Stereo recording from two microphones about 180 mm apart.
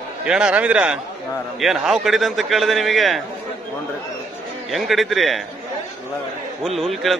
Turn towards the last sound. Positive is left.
turn(degrees=0)  # may be behind; listen again after turning